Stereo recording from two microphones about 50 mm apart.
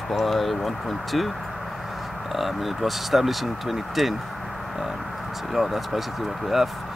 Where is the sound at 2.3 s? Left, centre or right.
Centre.